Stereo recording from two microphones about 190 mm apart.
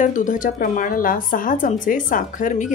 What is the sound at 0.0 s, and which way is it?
A woman's voice, 40° left (ahead or behind).